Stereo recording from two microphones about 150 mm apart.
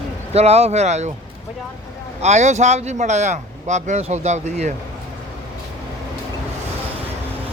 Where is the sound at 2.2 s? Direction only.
50° right (ahead or behind).